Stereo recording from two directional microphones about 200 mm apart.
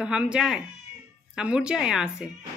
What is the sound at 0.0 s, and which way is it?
Speech, 5° right (ahead or behind).